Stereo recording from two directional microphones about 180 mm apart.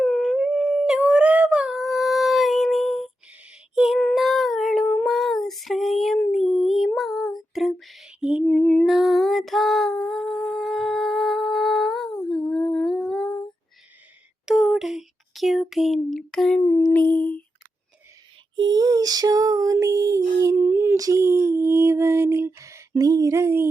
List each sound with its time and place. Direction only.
0.0 s dog: 5° left (ahead or behind)
3.8 s child singing: centre (ahead or behind)
6.1 s female singing: 5° left (ahead or behind)
8.5 s female singing: 5° left (ahead or behind)
14.4 s a sound: centre (ahead or behind)
18.5 s female singing: 25° right (ahead or behind)